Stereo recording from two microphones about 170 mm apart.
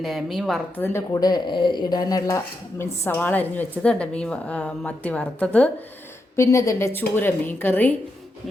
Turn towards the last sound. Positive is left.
turn(degrees=10)  # may be behind; listen again after turning